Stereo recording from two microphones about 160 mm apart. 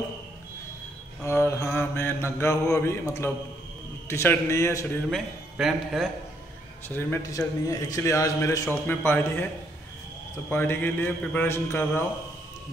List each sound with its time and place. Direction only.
1.2 s mantra: 15° left (ahead or behind)
4.1 s a man's voice: 15° left (ahead or behind)
5.1 s a man's voice: centre (ahead or behind)
6.9 s a man's voice: 15° left (ahead or behind)
10.5 s a man's voice: 15° left (ahead or behind)